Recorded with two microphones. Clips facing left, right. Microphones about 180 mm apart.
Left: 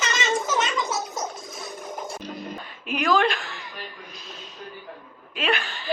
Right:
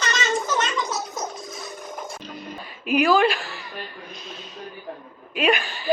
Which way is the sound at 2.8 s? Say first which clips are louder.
Right 7 dB; 15° right (ahead or behind).